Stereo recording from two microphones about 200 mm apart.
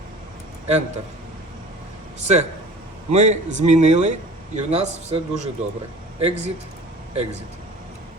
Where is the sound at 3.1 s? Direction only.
35° right (ahead or behind).